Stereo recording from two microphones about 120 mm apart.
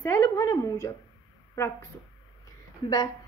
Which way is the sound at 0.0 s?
25° left (ahead or behind).